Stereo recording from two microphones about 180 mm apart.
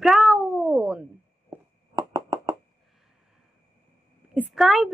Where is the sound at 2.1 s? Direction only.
20° right (ahead or behind).